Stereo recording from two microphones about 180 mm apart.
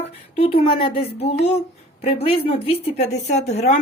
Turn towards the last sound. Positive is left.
turn(degrees=40)  # may be behind; listen again after turning